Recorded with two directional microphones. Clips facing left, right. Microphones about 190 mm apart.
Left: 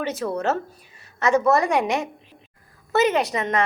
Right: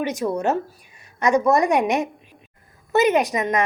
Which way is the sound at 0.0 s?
15° right (ahead or behind).